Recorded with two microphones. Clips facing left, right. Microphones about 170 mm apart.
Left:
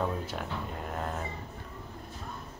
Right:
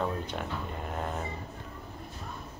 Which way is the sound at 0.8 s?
Centre (ahead or behind).